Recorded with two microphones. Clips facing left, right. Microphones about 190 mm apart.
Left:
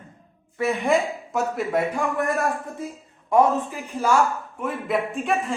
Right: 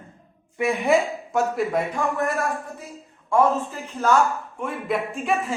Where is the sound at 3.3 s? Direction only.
15° left (ahead or behind).